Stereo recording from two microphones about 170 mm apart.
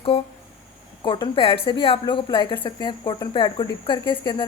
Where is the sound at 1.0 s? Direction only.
30° left (ahead or behind).